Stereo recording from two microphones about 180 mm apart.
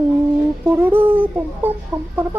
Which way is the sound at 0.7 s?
10° right (ahead or behind).